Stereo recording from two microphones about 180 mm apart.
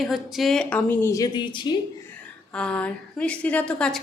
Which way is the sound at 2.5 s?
5° left (ahead or behind).